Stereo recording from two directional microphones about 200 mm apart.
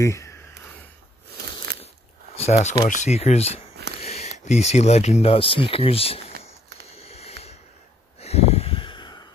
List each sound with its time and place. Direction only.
0.0 s speech: 15° left (ahead or behind)
2.3 s speech: 30° left (ahead or behind)
7.0 s a sound: 30° left (ahead or behind)